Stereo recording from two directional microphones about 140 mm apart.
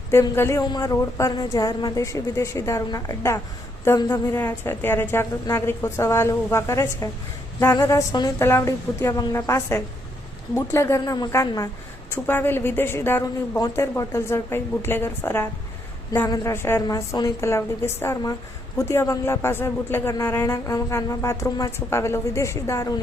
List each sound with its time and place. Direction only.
0.1 s a woman's voice: 20° left (ahead or behind)